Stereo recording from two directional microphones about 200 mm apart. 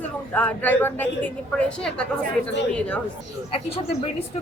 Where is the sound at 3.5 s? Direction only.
30° left (ahead or behind).